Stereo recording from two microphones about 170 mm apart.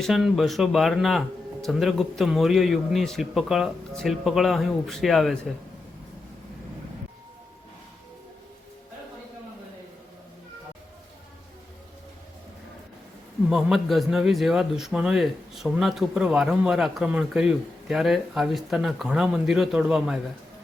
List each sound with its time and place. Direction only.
0.0 s a man's voice: centre (ahead or behind)
13.5 s a man's voice: centre (ahead or behind)